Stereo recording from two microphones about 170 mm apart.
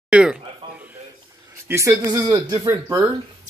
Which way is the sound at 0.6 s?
30° right (ahead or behind).